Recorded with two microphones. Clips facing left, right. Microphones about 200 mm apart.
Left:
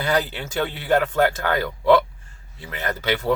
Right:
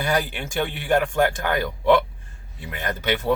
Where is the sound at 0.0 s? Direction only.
10° right (ahead or behind).